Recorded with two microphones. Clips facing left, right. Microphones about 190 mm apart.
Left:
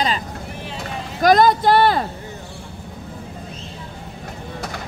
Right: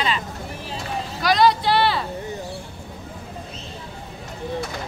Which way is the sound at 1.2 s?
50° left (ahead or behind).